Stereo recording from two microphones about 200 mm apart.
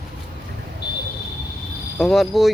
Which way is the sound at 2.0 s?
Centre (ahead or behind).